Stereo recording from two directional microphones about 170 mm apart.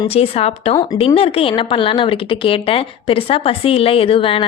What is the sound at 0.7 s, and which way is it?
Speech, 25° left (ahead or behind).